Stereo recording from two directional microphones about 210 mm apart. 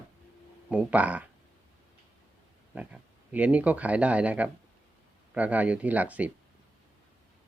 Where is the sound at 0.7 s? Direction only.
5° right (ahead or behind).